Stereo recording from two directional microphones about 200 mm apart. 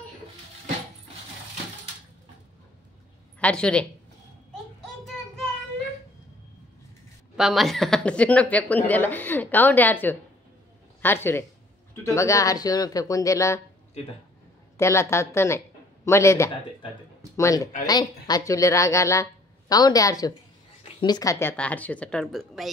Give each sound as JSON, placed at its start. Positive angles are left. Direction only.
{"t": 3.3, "sound": "a woman's voice", "side_deg": 5}
{"t": 7.3, "sound": "speech", "side_deg": 0}
{"t": 14.8, "sound": "a woman's voice", "side_deg": 15}